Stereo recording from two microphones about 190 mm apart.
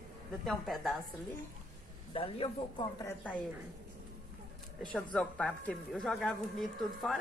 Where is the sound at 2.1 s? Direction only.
30° left (ahead or behind).